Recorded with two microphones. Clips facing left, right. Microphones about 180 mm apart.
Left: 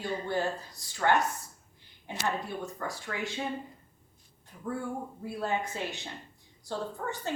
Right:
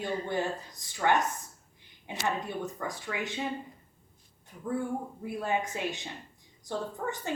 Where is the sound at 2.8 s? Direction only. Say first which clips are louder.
Right 1 dB; 15° right (ahead or behind).